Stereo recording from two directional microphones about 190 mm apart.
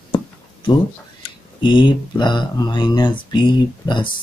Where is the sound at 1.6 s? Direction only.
25° left (ahead or behind).